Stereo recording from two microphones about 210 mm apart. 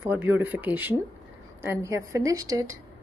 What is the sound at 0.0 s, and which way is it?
A woman's voice, 10° right (ahead or behind).